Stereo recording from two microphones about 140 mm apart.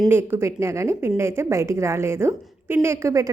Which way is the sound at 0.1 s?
15° right (ahead or behind).